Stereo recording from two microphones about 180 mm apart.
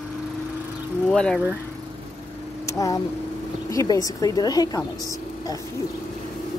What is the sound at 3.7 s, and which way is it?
A woman's voice, 20° left (ahead or behind).